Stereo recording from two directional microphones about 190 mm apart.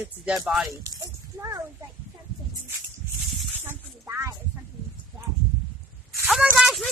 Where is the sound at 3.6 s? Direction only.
15° right (ahead or behind).